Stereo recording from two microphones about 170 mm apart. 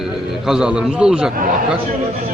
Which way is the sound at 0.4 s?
5° right (ahead or behind).